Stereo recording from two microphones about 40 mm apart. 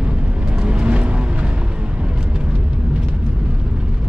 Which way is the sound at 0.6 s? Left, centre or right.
Right.